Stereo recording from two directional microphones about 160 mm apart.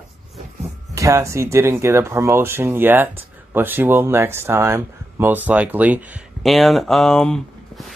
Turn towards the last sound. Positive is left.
turn(degrees=0)  # may be behind; listen again after turning